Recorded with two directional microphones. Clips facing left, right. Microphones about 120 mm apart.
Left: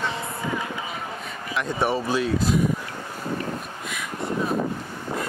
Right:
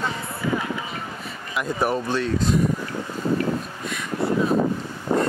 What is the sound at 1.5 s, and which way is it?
Speech, centre (ahead or behind).